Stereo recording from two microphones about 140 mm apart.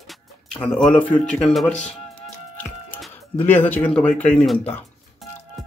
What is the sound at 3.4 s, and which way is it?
A man's voice, 15° left (ahead or behind).